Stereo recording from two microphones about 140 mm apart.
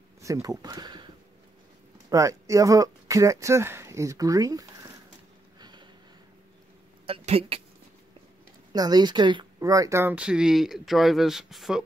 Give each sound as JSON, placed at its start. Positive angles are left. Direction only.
{"t": 0.2, "sound": "speech", "side_deg": -25}
{"t": 5.6, "sound": "a sound", "side_deg": -30}
{"t": 7.1, "sound": "speech", "side_deg": -45}
{"t": 8.7, "sound": "speech", "side_deg": -30}